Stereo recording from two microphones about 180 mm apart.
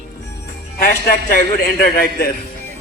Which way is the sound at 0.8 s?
50° left (ahead or behind).